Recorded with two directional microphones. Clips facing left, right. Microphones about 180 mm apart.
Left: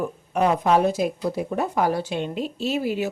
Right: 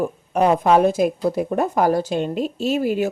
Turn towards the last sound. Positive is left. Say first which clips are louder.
# right 4 dB
turn(degrees=-50)  # may be behind; listen again after turning